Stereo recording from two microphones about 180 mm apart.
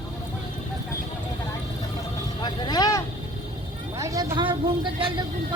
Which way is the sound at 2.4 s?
25° left (ahead or behind).